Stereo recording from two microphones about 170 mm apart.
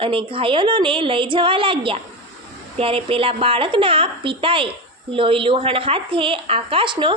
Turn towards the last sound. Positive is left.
turn(degrees=-30)  # may be behind; listen again after turning